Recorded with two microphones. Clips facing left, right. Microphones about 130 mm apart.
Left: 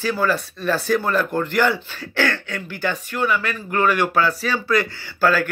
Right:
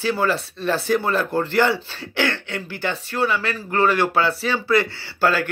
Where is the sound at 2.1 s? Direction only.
20° right (ahead or behind).